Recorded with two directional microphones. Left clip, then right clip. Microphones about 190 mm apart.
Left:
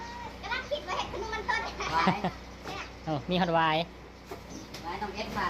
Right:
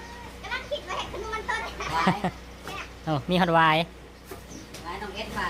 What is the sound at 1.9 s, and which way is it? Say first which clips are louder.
Speech: right 2 dB; 15° right (ahead or behind).